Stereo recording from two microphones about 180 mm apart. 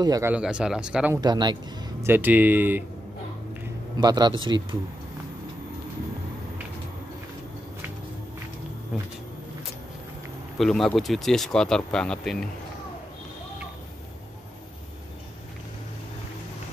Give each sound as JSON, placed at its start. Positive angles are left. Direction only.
{"t": 0.0, "sound": "a man's voice", "side_deg": -20}
{"t": 0.3, "sound": "speech", "side_deg": -5}
{"t": 1.1, "sound": "a man's voice", "side_deg": -20}
{"t": 2.0, "sound": "speech", "side_deg": -10}
{"t": 4.0, "sound": "a man's voice", "side_deg": -25}
{"t": 10.6, "sound": "speech", "side_deg": 5}